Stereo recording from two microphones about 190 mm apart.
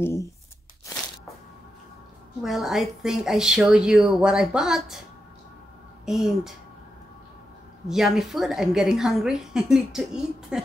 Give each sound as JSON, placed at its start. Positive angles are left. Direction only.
{"t": 0.0, "sound": "speech", "side_deg": 15}
{"t": 2.4, "sound": "a woman's voice", "side_deg": 0}
{"t": 6.0, "sound": "a woman's voice", "side_deg": 0}
{"t": 7.9, "sound": "a woman's voice", "side_deg": 0}